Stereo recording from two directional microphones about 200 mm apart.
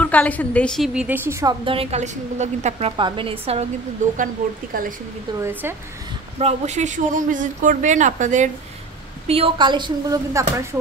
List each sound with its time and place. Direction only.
0.0 s a woman's voice: 5° left (ahead or behind); by 4.9 s 45° right (ahead or behind)
5.4 s a woman's voice: 10° right (ahead or behind)
6.3 s speech: 35° right (ahead or behind)
9.3 s speech: 25° right (ahead or behind)